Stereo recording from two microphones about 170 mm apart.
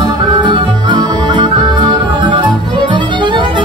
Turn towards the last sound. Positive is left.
turn(degrees=-30)  # may be behind; listen again after turning